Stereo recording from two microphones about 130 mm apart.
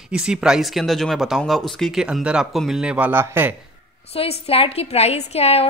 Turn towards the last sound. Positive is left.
turn(degrees=50)  # may be behind; listen again after turning